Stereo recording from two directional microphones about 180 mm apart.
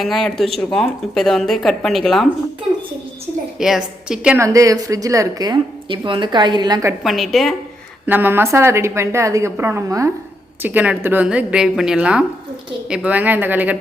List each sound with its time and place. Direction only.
0.0 s speech: centre (ahead or behind)
3.6 s speech: 5° right (ahead or behind)
4.4 s a woman's voice: 20° right (ahead or behind)
7.0 s speech: centre (ahead or behind)
8.0 s a woman's voice: 10° right (ahead or behind)